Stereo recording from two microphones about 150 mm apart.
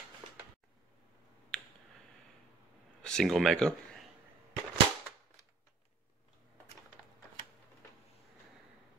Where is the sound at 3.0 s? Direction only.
5° left (ahead or behind).